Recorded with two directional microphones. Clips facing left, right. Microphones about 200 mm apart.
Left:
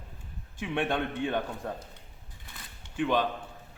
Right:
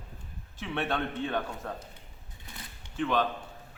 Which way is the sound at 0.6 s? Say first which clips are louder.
Left 2 dB; 15° left (ahead or behind).